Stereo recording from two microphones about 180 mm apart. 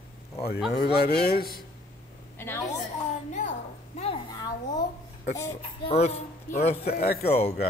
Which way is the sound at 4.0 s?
25° left (ahead or behind).